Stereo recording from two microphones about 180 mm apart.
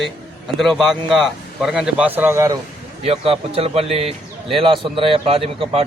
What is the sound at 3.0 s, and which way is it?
A man's voice, 35° right (ahead or behind).